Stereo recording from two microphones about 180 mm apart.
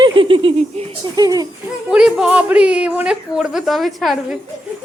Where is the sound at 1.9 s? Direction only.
5° right (ahead or behind).